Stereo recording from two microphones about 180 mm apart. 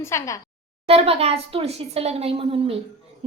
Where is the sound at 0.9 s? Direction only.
35° right (ahead or behind).